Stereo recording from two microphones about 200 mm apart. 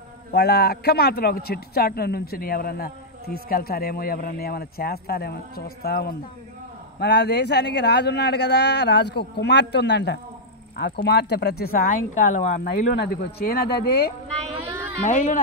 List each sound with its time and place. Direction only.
0.3 s a man's voice: 55° left (ahead or behind)
12.9 s a man's voice: 55° left (ahead or behind)
14.6 s a sound: 10° right (ahead or behind)
15.0 s speech: 40° left (ahead or behind)